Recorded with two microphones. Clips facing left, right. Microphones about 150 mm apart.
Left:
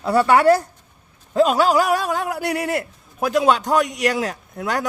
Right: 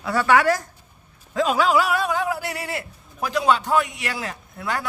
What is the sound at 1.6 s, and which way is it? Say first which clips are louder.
A man's voice: left 3 dB; 40° left (ahead or behind).